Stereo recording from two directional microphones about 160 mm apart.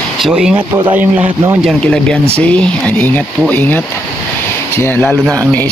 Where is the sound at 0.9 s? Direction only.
15° right (ahead or behind).